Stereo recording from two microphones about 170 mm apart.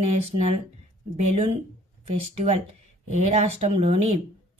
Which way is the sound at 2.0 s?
35° right (ahead or behind).